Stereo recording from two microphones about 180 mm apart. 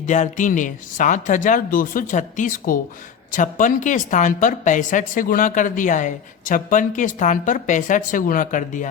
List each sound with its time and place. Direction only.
0.0 s a woman's voice: 40° left (ahead or behind)